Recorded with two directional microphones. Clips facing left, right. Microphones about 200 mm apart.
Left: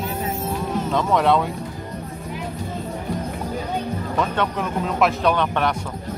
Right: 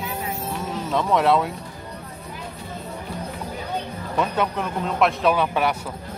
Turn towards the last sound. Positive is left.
turn(degrees=-5)  # may be behind; listen again after turning